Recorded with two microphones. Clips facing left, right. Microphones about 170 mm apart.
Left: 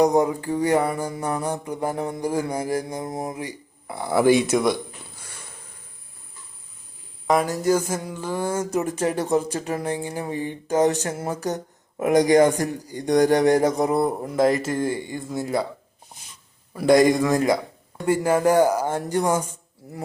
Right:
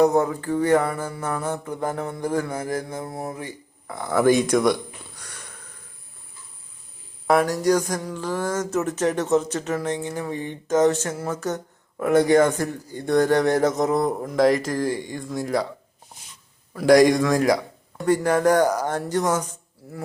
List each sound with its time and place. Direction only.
0.0 s mantra: 15° left (ahead or behind)
7.3 s a sound: centre (ahead or behind)
8.4 s speech: 30° left (ahead or behind)
8.7 s mantra: 10° left (ahead or behind)
16.8 s mantra: centre (ahead or behind)